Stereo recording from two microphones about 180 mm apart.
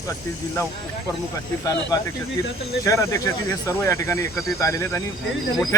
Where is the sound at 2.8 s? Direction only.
15° left (ahead or behind).